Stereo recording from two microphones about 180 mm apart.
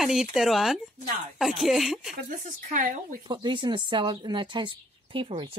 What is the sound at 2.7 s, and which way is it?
Speech, 45° right (ahead or behind).